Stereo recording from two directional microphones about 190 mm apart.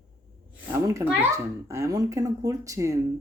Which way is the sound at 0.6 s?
15° right (ahead or behind).